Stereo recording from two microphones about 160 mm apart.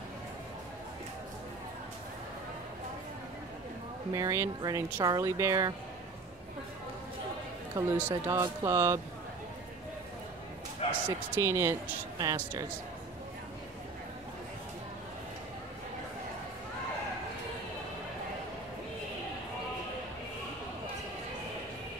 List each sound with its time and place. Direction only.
4.1 s speech: 20° right (ahead or behind)
7.8 s speech: 20° right (ahead or behind)
10.8 s bow-wow: 40° left (ahead or behind)
11.3 s speech: 15° right (ahead or behind)